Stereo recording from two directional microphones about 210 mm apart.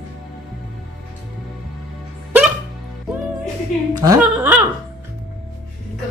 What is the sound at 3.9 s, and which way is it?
Chuckle, 20° right (ahead or behind).